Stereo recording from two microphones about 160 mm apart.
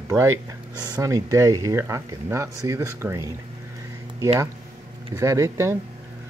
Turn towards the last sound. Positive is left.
turn(degrees=-20)  # may be behind; listen again after turning